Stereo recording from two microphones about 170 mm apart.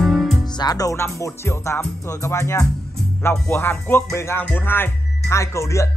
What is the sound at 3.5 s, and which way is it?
Speech, 15° left (ahead or behind).